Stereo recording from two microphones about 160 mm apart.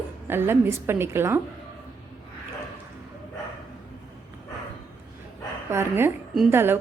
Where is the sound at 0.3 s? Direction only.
15° right (ahead or behind).